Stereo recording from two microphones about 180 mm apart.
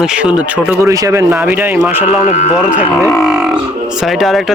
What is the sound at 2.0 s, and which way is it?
Speech, 40° left (ahead or behind).